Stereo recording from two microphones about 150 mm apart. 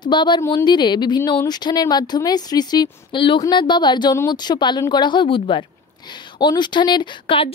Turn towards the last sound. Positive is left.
turn(degrees=35)  # may be behind; listen again after turning